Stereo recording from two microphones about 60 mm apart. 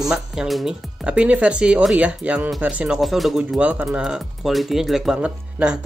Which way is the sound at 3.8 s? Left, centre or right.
Centre.